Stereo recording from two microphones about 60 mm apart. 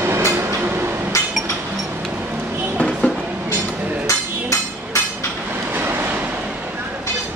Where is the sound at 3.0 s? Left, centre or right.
Left.